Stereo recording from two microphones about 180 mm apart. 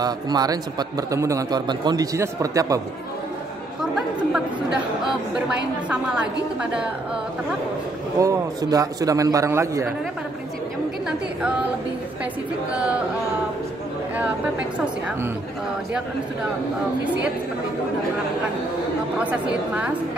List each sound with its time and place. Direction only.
0.0 s a man's voice: 20° right (ahead or behind)
5.9 s a man's voice: 5° right (ahead or behind)
8.2 s a man's voice: 20° right (ahead or behind)
12.7 s a man's voice: 5° right (ahead or behind)
19.1 s a man's voice: 5° right (ahead or behind)